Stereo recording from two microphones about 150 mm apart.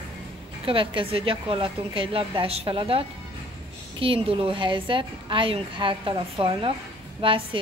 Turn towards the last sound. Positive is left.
turn(degrees=-35)  # may be behind; listen again after turning